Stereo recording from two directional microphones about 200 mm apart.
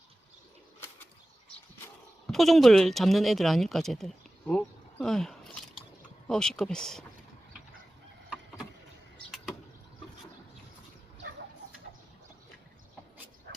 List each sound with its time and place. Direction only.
2.2 s speech: centre (ahead or behind)
9.1 s a sound: centre (ahead or behind)
13.5 s dog: 60° right (ahead or behind)